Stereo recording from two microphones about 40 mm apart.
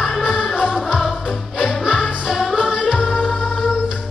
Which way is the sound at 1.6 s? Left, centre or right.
Centre.